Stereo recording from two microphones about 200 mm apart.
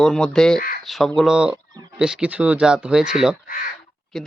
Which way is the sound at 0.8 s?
Centre (ahead or behind).